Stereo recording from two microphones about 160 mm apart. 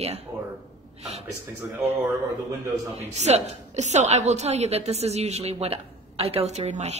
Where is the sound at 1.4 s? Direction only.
15° right (ahead or behind).